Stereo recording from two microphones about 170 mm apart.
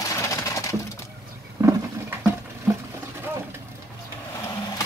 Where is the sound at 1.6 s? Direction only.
15° right (ahead or behind).